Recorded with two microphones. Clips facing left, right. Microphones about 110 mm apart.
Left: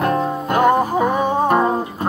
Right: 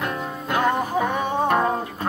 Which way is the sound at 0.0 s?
40° left (ahead or behind).